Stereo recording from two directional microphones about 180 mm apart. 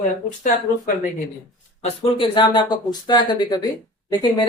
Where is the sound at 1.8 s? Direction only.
30° left (ahead or behind).